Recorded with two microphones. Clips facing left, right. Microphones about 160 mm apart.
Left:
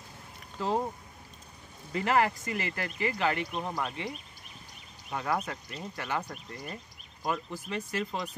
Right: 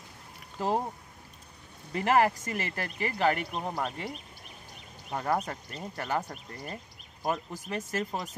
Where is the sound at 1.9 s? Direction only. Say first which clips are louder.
Right 2 dB; 45° right (ahead or behind).